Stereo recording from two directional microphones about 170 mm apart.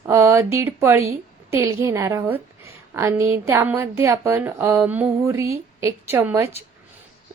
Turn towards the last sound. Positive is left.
turn(degrees=-15)  # may be behind; listen again after turning